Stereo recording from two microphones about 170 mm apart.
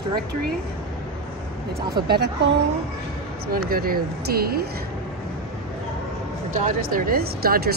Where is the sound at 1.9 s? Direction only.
70° right (ahead or behind).